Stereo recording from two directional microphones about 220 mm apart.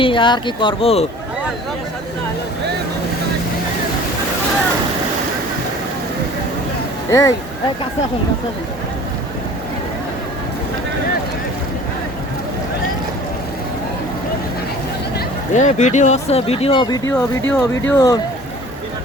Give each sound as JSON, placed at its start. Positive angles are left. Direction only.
{"t": 0.0, "sound": "speech", "side_deg": 20}
{"t": 7.1, "sound": "speech", "side_deg": 15}
{"t": 15.5, "sound": "speech", "side_deg": 35}